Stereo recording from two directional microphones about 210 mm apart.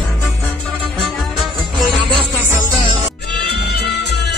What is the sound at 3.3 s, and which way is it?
Music, 50° left (ahead or behind).